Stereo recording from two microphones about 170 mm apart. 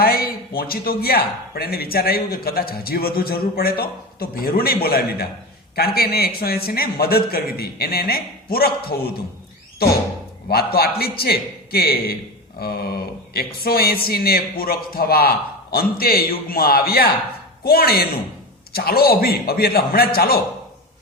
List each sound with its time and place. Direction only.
0.0 s a man's voice: 60° left (ahead or behind)